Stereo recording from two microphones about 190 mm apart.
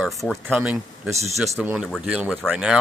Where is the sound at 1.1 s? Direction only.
35° right (ahead or behind).